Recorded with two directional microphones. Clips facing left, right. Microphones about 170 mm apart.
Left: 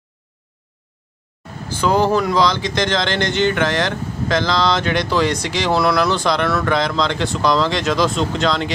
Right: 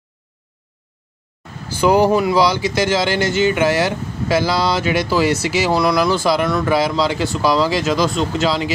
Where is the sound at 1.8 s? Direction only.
10° right (ahead or behind).